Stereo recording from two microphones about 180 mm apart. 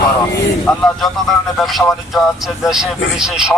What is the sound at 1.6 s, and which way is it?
Speech, centre (ahead or behind).